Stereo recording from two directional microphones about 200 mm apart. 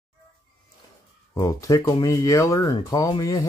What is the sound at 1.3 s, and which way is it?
Speech, 15° left (ahead or behind).